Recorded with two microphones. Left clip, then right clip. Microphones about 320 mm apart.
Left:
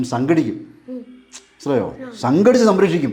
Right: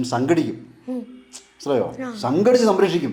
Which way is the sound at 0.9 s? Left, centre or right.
Right.